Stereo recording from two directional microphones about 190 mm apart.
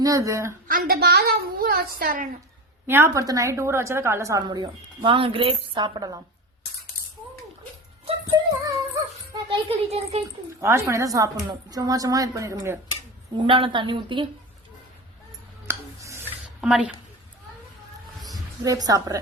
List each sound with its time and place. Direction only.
0.0 s a woman's voice: 15° right (ahead or behind)
0.7 s a woman's voice: 50° right (ahead or behind)
2.8 s a woman's voice: 10° right (ahead or behind)
8.0 s music: 20° right (ahead or behind)
9.3 s a child's voice: 30° right (ahead or behind)
10.6 s a woman's voice: 15° right (ahead or behind)
13.3 s a woman's voice: 25° right (ahead or behind)
15.6 s a sound: 15° right (ahead or behind)
16.6 s a woman's voice: 5° right (ahead or behind)
18.6 s a woman's voice: 20° right (ahead or behind)